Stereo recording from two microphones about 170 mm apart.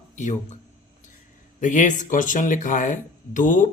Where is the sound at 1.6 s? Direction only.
45° left (ahead or behind).